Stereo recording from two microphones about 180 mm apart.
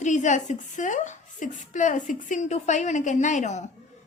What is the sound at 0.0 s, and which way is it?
A woman's voice, 40° left (ahead or behind).